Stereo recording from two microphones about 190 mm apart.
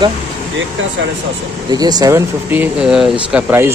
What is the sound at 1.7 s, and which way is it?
Speech, 20° right (ahead or behind).